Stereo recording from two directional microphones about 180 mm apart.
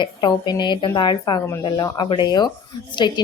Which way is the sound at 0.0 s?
25° left (ahead or behind).